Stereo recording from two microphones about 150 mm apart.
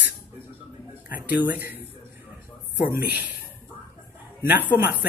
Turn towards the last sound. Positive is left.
turn(degrees=-10)  # may be behind; listen again after turning